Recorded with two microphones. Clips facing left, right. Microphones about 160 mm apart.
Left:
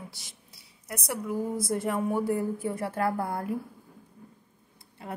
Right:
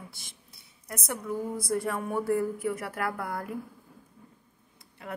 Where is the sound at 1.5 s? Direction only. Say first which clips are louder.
Left 1 dB; 20° left (ahead or behind).